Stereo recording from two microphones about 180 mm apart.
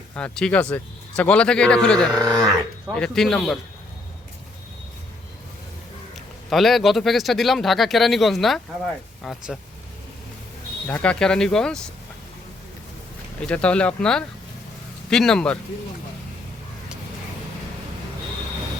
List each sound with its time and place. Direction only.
0.1 s a man's voice: 5° left (ahead or behind)
2.2 s speech: 20° right (ahead or behind)
2.9 s a man's voice: 5° left (ahead or behind)
6.5 s a man's voice: centre (ahead or behind)
10.8 s a man's voice: 5° left (ahead or behind)
13.4 s a man's voice: 5° left (ahead or behind)